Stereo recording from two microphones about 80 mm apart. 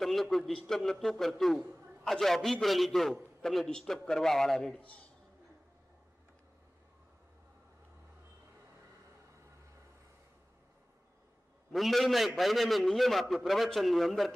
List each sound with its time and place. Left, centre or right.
0.0 s a man's voice: centre
4.7 s a man's voice: centre
11.7 s a man's voice: centre